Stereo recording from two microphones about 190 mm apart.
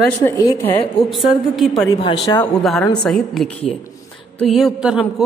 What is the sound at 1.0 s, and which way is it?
Speech, centre (ahead or behind).